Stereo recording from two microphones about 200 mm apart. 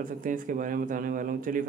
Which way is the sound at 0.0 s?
40° right (ahead or behind).